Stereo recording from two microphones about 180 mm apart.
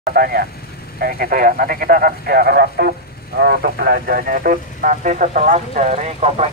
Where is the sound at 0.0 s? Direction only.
55° right (ahead or behind).